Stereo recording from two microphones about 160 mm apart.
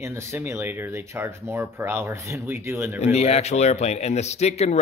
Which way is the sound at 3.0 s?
40° left (ahead or behind).